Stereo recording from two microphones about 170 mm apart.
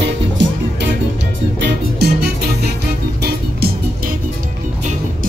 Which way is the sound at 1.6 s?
70° right (ahead or behind).